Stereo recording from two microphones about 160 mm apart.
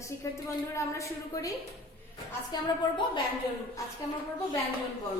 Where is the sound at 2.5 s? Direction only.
30° left (ahead or behind).